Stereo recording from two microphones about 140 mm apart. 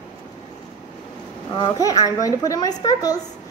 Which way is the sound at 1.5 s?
30° left (ahead or behind).